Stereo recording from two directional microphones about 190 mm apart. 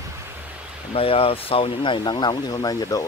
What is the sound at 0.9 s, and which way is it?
Speech, 30° left (ahead or behind).